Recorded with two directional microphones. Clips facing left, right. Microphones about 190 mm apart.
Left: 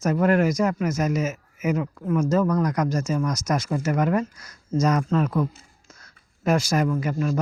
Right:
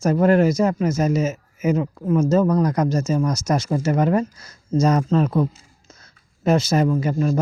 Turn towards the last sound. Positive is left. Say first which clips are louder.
# right 4 dB
turn(degrees=-30)  # may be behind; listen again after turning